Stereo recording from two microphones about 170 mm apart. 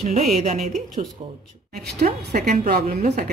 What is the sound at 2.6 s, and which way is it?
Speech, 60° right (ahead or behind).